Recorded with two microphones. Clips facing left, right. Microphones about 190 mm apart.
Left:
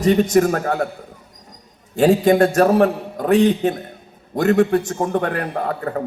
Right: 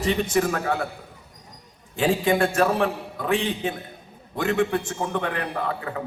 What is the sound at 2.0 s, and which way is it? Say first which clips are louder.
A man's voice: left 7 dB; 40° left (ahead or behind).